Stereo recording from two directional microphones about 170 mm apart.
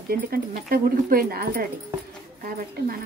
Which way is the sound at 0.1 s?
60° right (ahead or behind).